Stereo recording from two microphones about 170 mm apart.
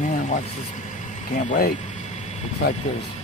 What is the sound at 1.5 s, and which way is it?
Speech, 55° left (ahead or behind).